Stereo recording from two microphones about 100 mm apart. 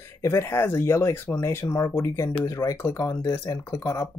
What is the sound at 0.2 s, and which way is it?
Speech, 30° left (ahead or behind).